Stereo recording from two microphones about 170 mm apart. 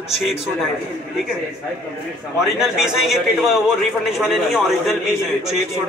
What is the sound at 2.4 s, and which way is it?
A man's voice, 5° right (ahead or behind).